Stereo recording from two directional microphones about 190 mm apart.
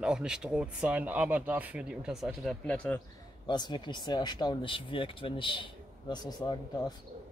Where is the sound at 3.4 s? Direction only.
25° left (ahead or behind).